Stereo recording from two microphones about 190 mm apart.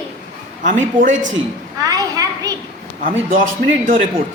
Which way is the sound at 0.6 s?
40° right (ahead or behind).